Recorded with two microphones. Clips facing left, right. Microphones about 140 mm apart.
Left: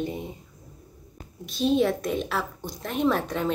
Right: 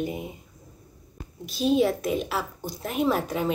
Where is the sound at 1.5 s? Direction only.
5° right (ahead or behind).